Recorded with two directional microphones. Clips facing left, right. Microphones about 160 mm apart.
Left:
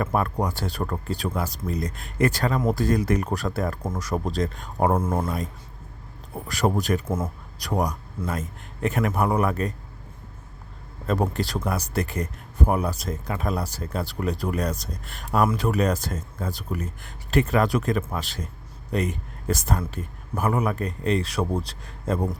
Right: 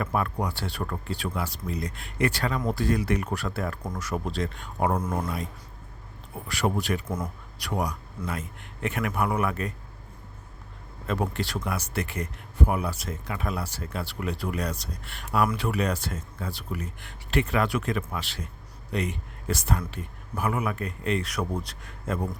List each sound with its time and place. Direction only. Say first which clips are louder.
0.0 s speech: left 3 dB; 45° left (ahead or behind)
5.0 s speech: left 4 dB; 25° left (ahead or behind)
6.5 s speech: left 4 dB; 40° left (ahead or behind)
11.0 s speech: left 4 dB; 40° left (ahead or behind)